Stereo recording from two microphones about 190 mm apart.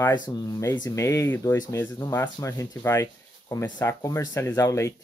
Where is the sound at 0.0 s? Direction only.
20° left (ahead or behind).